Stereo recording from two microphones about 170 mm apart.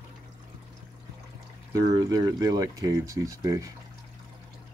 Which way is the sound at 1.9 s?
20° right (ahead or behind).